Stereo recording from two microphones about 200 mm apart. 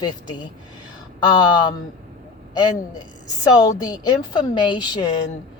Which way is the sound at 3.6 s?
20° left (ahead or behind).